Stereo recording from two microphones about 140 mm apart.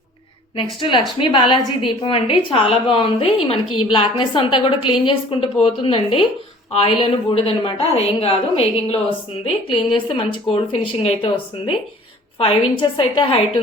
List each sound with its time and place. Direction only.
0.5 s a woman's voice: 35° left (ahead or behind)